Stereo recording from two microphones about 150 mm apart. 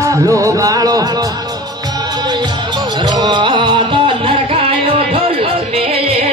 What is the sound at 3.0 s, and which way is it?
Music, 30° right (ahead or behind).